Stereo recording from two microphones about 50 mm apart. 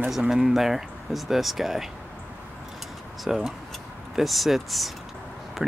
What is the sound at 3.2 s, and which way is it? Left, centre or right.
Speech, centre.